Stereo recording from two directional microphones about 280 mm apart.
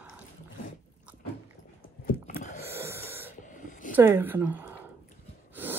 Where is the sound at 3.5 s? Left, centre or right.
Left.